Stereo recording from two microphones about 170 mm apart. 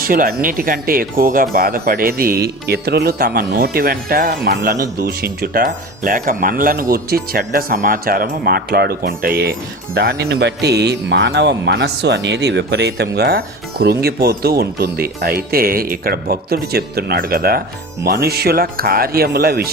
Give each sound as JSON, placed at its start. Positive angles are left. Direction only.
{"t": 0.0, "sound": "speech", "side_deg": -60}